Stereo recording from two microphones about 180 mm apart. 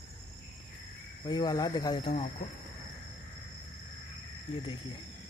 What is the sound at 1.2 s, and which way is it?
Speech, 20° left (ahead or behind).